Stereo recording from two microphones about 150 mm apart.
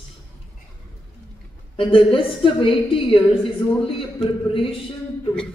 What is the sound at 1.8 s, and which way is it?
A woman's voice, 35° left (ahead or behind).